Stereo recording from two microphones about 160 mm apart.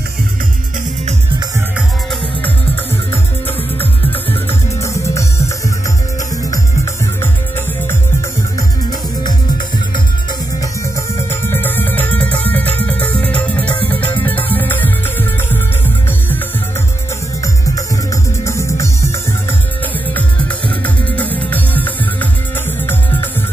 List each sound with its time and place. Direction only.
2.0 s music: 10° left (ahead or behind)
6.5 s music: 20° left (ahead or behind)
10.6 s music: 15° left (ahead or behind)
17.4 s music: 20° left (ahead or behind)
20.8 s music: 10° left (ahead or behind)